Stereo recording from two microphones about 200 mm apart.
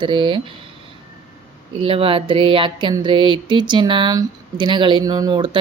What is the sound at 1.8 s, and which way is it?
Speech, 25° right (ahead or behind).